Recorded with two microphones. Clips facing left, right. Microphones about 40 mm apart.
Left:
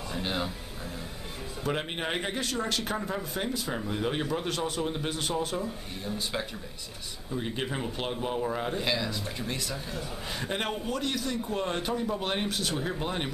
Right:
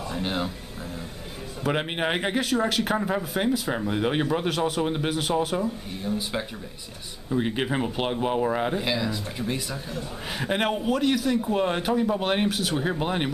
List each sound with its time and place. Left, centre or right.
0.1 s speech: centre
1.7 s speech: right
2.3 s speech: centre
4.5 s speech: centre
4.8 s speech: right
5.3 s speech: centre
7.2 s speech: right
8.7 s speech: centre
12.4 s speech: centre
13.0 s speech: right